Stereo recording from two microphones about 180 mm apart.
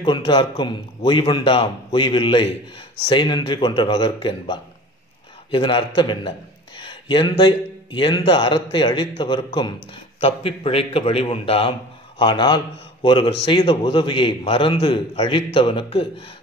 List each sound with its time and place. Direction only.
0.0 s a man's voice: 25° left (ahead or behind)